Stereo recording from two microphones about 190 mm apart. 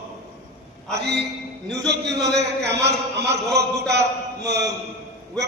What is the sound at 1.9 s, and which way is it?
A man's voice, 60° right (ahead or behind).